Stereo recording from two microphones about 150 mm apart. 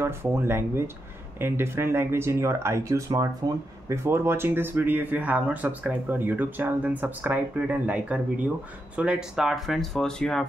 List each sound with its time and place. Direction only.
0.0 s speech: 15° right (ahead or behind); by 10.4 s 5° left (ahead or behind)